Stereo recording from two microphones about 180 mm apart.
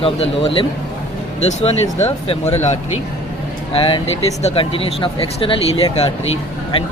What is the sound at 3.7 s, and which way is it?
Speech, 30° left (ahead or behind).